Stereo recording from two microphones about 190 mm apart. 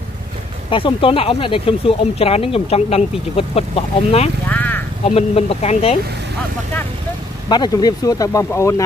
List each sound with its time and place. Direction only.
0.7 s speech: 25° left (ahead or behind)
4.5 s vehicle: 10° left (ahead or behind)
5.0 s speech: 30° left (ahead or behind)
7.4 s speech: 20° left (ahead or behind)